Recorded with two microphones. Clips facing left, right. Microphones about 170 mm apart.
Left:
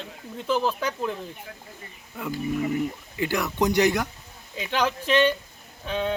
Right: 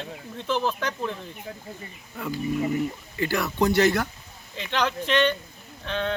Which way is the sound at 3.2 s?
15° left (ahead or behind).